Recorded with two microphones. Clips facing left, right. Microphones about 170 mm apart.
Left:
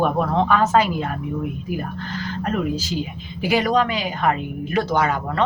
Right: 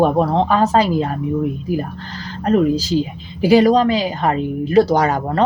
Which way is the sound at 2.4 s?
35° right (ahead or behind).